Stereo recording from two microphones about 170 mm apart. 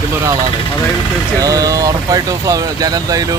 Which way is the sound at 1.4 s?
20° right (ahead or behind).